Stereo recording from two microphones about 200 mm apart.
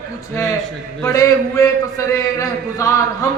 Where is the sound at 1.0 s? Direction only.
15° left (ahead or behind).